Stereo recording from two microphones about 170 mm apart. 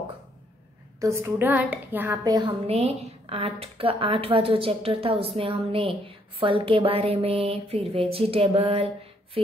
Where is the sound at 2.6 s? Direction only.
35° right (ahead or behind).